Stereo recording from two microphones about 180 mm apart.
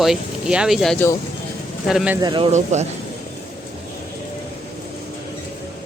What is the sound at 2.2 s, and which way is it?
Speech, 25° right (ahead or behind).